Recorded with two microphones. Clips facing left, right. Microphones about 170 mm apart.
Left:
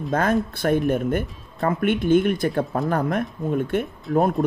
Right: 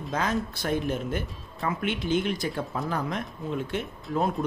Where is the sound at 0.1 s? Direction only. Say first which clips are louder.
Left 7 dB; 55° left (ahead or behind).